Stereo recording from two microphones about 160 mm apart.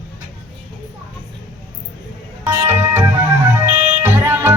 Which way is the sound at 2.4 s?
15° right (ahead or behind).